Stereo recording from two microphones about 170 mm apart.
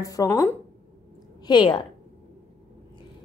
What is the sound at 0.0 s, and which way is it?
A woman's voice, 20° left (ahead or behind).